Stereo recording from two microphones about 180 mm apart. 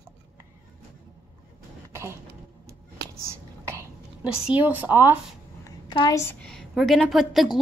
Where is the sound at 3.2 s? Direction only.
15° right (ahead or behind).